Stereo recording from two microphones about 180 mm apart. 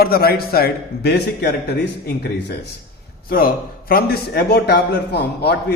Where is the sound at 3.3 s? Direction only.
55° left (ahead or behind).